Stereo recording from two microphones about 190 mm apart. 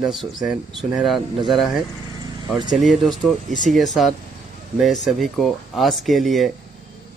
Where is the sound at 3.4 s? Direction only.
40° right (ahead or behind).